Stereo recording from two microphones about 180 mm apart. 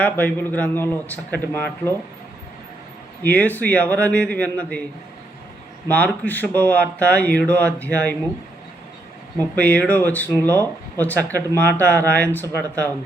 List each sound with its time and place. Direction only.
0.0 s speech: 10° left (ahead or behind)
3.2 s speech: 10° left (ahead or behind)
5.9 s speech: 10° left (ahead or behind)
9.6 s speech: 5° left (ahead or behind)
12.6 s speech: 15° right (ahead or behind)